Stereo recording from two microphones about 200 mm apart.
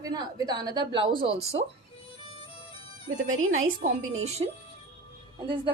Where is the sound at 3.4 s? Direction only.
90° right.